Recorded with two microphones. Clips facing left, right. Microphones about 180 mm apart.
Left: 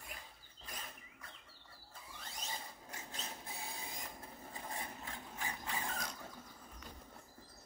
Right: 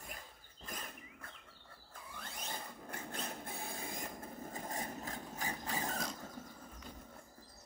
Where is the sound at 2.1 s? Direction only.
55° right (ahead or behind); by 6.0 s 40° right (ahead or behind).